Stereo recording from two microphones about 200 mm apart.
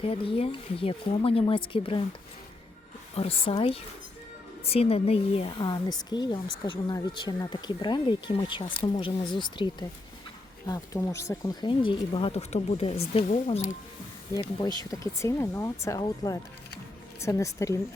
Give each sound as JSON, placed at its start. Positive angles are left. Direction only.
{"t": 0.0, "sound": "speech", "side_deg": 30}
{"t": 3.2, "sound": "speech", "side_deg": 25}
{"t": 10.7, "sound": "speech", "side_deg": 15}
{"t": 14.8, "sound": "speech", "side_deg": 15}